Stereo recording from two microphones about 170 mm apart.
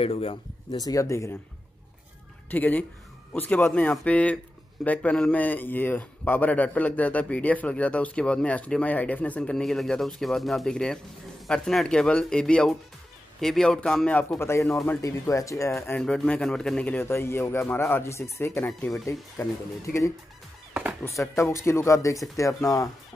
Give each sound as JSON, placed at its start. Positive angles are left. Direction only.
{"t": 0.0, "sound": "speech", "side_deg": 35}
{"t": 2.5, "sound": "a man's voice", "side_deg": 10}
{"t": 16.0, "sound": "a man's voice", "side_deg": 5}
{"t": 18.7, "sound": "speech", "side_deg": 0}
{"t": 19.4, "sound": "a man's voice", "side_deg": 15}
{"t": 21.0, "sound": "a man's voice", "side_deg": 15}